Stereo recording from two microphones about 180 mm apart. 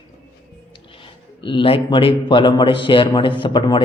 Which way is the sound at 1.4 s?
25° left (ahead or behind).